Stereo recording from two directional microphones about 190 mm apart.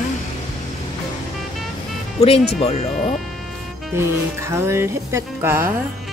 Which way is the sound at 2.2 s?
35° left (ahead or behind).